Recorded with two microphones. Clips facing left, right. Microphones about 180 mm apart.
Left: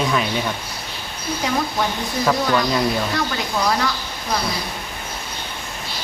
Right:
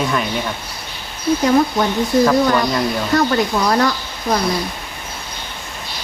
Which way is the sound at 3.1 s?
50° right (ahead or behind).